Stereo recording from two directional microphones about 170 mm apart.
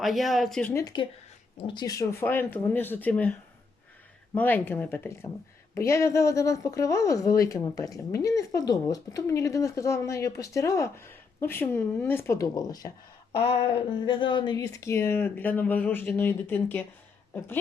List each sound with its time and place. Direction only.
0.0 s speech: centre (ahead or behind)
0.7 s speech: 20° left (ahead or behind)
4.4 s speech: 10° left (ahead or behind)